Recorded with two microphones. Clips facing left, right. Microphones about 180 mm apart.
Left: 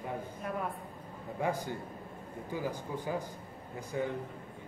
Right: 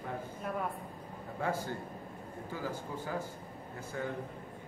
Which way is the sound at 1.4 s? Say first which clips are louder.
Left 1 dB; 15° left (ahead or behind).